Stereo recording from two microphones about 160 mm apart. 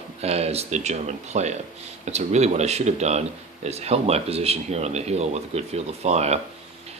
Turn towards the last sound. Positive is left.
turn(degrees=-45)  # may be behind; listen again after turning